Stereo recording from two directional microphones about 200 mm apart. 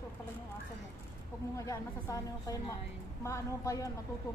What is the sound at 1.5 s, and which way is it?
A woman's voice, 15° left (ahead or behind).